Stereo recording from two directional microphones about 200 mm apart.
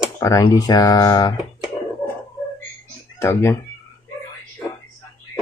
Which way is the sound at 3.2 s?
15° left (ahead or behind).